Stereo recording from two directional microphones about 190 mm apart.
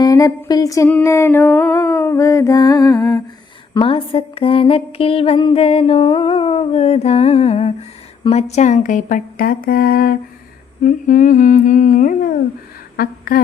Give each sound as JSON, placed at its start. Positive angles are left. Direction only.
{"t": 0.0, "sound": "a sound", "side_deg": 15}
{"t": 3.8, "sound": "mantra", "side_deg": 30}
{"t": 10.8, "sound": "a woman's voice", "side_deg": 45}